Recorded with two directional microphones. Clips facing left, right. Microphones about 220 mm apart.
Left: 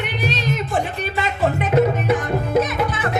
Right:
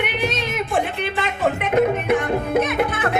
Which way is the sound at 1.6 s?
55° right (ahead or behind).